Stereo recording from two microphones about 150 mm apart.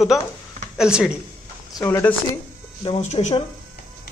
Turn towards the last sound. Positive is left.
turn(degrees=45)  # may be behind; listen again after turning